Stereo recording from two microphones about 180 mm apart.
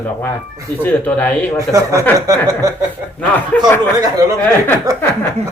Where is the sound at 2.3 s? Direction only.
20° right (ahead or behind).